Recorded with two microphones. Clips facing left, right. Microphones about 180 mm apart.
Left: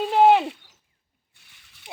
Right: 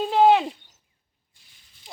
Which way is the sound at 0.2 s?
5° left (ahead or behind).